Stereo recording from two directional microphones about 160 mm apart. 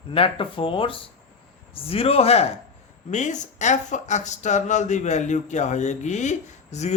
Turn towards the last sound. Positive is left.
turn(degrees=45)  # may be behind; listen again after turning